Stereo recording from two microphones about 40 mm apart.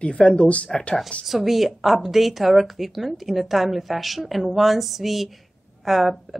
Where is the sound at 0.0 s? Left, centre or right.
Left.